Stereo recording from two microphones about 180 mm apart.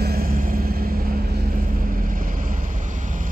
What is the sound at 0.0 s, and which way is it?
Vehicle, 55° right (ahead or behind).